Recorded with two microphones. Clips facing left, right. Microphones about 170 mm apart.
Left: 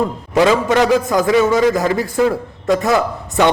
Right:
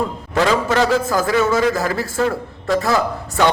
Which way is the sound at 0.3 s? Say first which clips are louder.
Left 4 dB; 15° left (ahead or behind).